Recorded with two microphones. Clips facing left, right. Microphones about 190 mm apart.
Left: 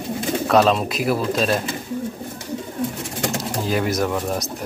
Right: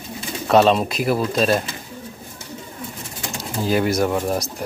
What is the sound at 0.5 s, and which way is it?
Speech, centre (ahead or behind).